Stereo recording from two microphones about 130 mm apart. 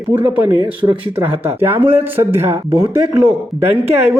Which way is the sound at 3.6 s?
15° right (ahead or behind).